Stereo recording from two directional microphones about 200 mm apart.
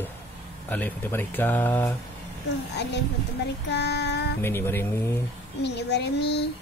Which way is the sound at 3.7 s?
55° left (ahead or behind).